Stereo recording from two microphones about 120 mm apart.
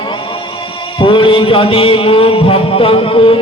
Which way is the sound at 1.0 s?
45° left (ahead or behind).